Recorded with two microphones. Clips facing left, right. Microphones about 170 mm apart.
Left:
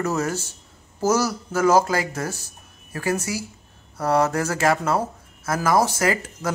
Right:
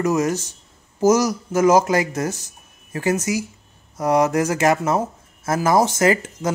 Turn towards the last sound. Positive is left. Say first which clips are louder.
# right 5 dB
turn(degrees=-20)  # may be behind; listen again after turning